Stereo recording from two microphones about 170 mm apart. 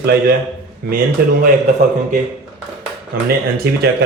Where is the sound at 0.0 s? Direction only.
65° right (ahead or behind).